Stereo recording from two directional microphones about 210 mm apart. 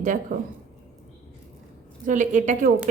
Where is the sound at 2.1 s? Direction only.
35° right (ahead or behind).